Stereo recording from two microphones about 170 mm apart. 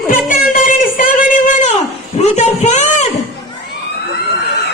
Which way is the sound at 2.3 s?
40° left (ahead or behind).